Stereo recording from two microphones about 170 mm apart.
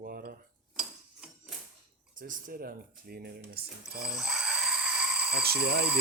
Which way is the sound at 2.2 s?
60° right (ahead or behind).